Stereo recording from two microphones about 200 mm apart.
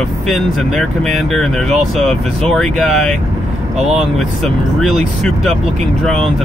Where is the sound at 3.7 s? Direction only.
35° right (ahead or behind).